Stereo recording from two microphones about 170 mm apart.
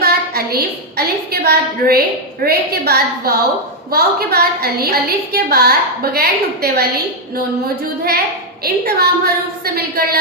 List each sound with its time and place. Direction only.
0.0 s a woman's voice: 65° right (ahead or behind)
8.6 s a woman's voice: 65° right (ahead or behind)